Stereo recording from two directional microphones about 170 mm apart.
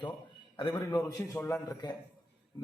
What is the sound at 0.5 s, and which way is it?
A man's voice, 25° left (ahead or behind).